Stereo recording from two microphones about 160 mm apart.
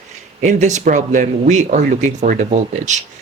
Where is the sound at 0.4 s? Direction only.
50° right (ahead or behind).